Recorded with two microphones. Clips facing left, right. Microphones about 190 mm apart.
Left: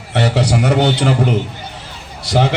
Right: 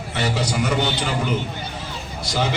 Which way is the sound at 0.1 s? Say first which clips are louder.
Left 8 dB; 70° left (ahead or behind).